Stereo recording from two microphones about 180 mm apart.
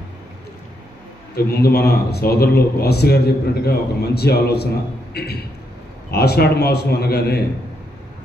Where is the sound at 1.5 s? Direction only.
60° left (ahead or behind).